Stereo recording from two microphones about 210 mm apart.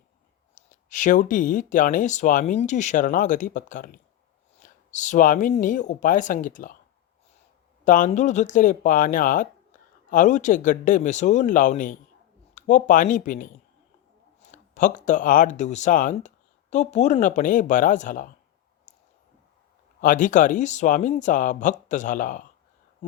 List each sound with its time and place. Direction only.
0.5 s speech: 35° left (ahead or behind)
7.9 s speech: 40° left (ahead or behind)
14.5 s speech: 35° left (ahead or behind)
18.9 s a sound: 35° left (ahead or behind)
20.0 s speech: 40° left (ahead or behind)